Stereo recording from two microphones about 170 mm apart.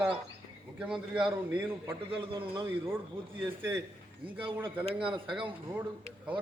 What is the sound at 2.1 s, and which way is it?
Speech, 30° right (ahead or behind).